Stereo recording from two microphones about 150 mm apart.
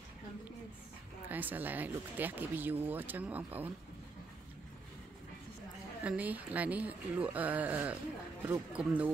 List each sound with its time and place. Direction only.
1.3 s speech: 10° right (ahead or behind)
6.0 s speech: 10° right (ahead or behind)